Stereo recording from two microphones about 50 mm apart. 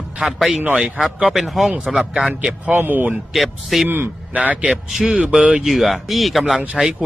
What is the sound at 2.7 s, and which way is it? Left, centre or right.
Speech, right.